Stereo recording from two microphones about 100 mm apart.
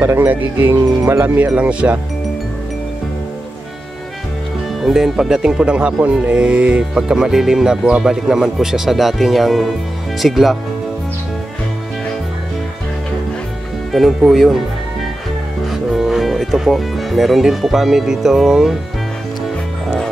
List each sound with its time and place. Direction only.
0.0 s speech: 25° right (ahead or behind)
4.8 s speech: 5° right (ahead or behind)
13.9 s speech: centre (ahead or behind)
15.6 s speech: centre (ahead or behind)